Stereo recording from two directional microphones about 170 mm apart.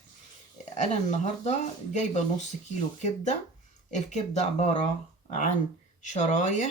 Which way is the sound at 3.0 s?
45° left (ahead or behind).